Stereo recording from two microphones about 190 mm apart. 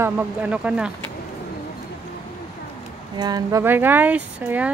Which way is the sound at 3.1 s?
20° right (ahead or behind).